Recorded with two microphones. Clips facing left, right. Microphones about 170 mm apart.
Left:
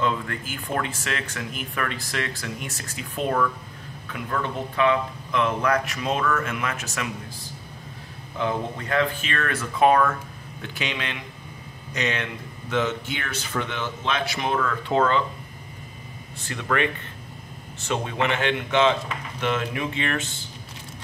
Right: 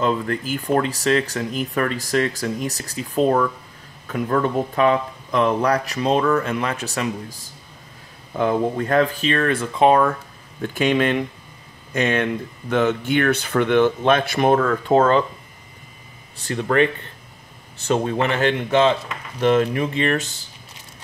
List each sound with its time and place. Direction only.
0.0 s speech: 35° right (ahead or behind)
8.4 s speech: 45° right (ahead or behind); by 10.1 s 30° right (ahead or behind)
10.6 s speech: 50° right (ahead or behind)
16.4 s speech: 35° right (ahead or behind)